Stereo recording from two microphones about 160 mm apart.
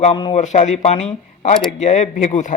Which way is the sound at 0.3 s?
45° left (ahead or behind).